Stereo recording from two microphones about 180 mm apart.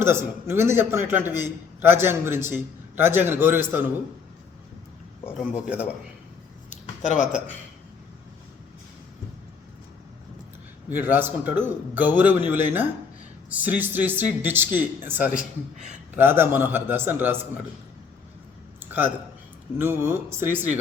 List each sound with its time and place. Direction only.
0.0 s a man's voice: 15° right (ahead or behind)
5.5 s a man's voice: 5° right (ahead or behind)
6.7 s a sound: 40° left (ahead or behind)
10.8 s a man's voice: 10° right (ahead or behind)
19.8 s a man's voice: 15° right (ahead or behind)